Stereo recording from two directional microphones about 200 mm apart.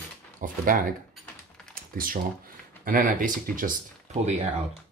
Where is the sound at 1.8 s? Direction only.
45° right (ahead or behind).